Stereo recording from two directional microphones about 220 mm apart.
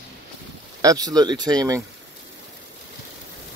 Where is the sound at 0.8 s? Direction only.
15° right (ahead or behind).